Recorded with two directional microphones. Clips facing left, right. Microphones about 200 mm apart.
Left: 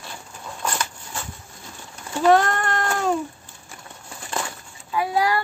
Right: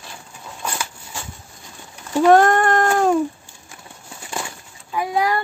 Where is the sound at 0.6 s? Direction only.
10° right (ahead or behind).